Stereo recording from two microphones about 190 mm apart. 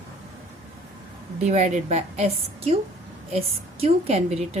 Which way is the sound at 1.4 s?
35° right (ahead or behind).